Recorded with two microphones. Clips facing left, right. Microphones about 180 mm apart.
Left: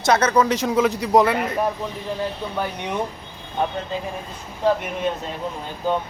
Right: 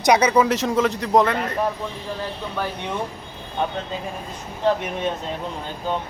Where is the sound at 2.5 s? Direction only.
15° left (ahead or behind).